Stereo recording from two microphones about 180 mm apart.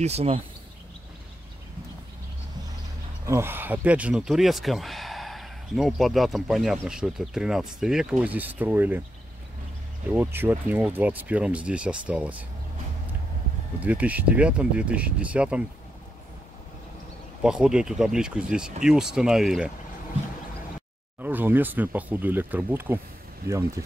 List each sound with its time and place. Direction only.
0.0 s speech: 35° right (ahead or behind)
3.3 s speech: 15° right (ahead or behind)
10.1 s speech: 10° right (ahead or behind)
13.7 s speech: 10° right (ahead or behind)
17.4 s speech: 5° right (ahead or behind)
21.2 s speech: 10° right (ahead or behind)